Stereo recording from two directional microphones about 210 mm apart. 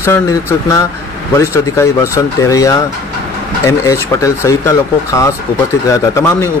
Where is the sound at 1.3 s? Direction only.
15° left (ahead or behind).